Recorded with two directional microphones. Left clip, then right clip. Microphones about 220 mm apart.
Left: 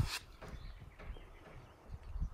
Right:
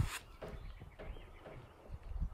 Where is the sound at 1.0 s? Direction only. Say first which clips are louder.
Right 4 dB; 45° right (ahead or behind).